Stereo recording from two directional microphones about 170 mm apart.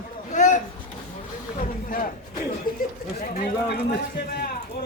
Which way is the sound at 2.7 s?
55° left (ahead or behind).